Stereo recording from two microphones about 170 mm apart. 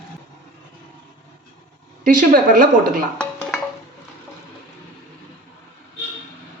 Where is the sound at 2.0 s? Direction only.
55° right (ahead or behind).